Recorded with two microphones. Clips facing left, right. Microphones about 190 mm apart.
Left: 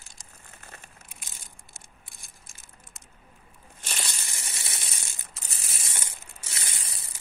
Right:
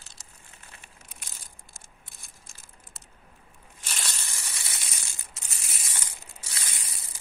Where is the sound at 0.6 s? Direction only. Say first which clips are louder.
Left 5 dB; 45° left (ahead or behind).